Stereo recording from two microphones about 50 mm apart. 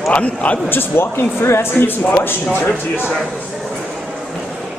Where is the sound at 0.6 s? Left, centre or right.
Left.